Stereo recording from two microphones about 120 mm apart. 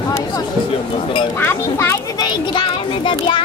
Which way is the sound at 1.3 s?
20° left (ahead or behind).